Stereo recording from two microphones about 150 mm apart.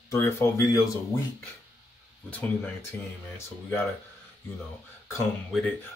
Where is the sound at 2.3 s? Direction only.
10° left (ahead or behind).